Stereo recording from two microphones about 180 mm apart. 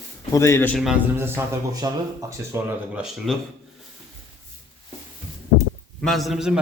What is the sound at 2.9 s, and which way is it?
Speech, centre (ahead or behind).